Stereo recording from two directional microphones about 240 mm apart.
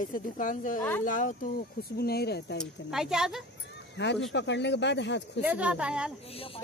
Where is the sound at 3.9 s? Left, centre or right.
Left.